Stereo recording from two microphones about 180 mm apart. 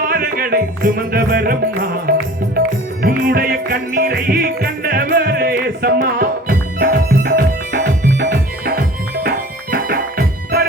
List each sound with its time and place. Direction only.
0.0 s music: 55° right (ahead or behind)